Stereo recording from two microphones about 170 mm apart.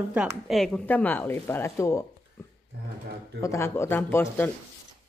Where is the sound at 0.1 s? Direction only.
5° right (ahead or behind); by 2.0 s 15° left (ahead or behind).